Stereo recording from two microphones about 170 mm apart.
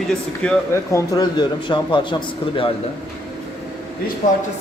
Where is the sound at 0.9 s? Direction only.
25° left (ahead or behind).